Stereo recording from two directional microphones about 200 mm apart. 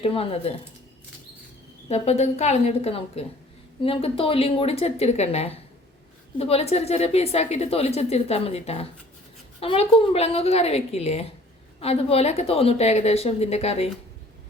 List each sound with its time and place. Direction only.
0.0 s a woman's voice: 30° left (ahead or behind)
1.9 s a woman's voice: 35° left (ahead or behind)